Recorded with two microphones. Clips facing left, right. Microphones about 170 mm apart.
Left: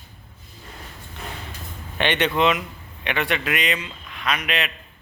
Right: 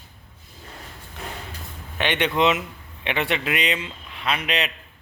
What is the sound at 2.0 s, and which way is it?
A man's voice, 10° right (ahead or behind).